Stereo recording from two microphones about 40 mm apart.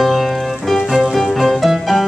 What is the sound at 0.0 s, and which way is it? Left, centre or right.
Music, centre.